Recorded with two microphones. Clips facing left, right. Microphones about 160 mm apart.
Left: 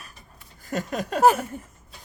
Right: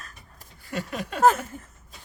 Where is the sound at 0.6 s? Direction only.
40° left (ahead or behind).